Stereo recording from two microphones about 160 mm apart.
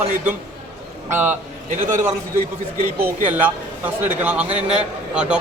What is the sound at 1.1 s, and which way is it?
Speech, 10° right (ahead or behind).